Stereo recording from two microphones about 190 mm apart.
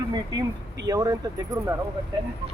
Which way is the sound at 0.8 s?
20° right (ahead or behind).